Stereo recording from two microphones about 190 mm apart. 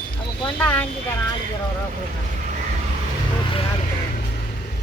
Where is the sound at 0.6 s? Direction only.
10° left (ahead or behind).